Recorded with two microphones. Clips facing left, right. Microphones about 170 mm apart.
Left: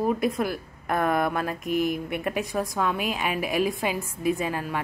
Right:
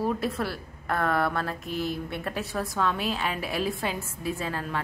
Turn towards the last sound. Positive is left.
turn(degrees=15)  # may be behind; listen again after turning